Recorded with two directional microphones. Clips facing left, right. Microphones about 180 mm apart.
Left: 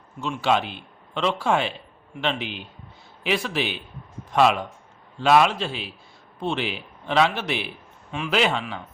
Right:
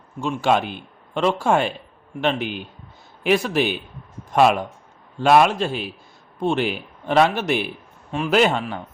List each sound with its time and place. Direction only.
0.2 s speech: 45° right (ahead or behind)